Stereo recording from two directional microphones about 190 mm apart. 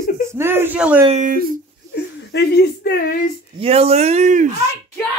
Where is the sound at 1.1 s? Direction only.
40° right (ahead or behind).